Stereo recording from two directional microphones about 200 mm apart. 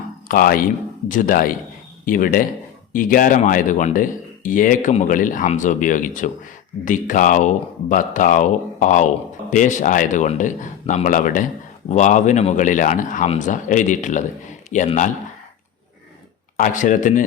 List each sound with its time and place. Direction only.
0.3 s a man's voice: 45° left (ahead or behind)
16.6 s speech: 40° left (ahead or behind)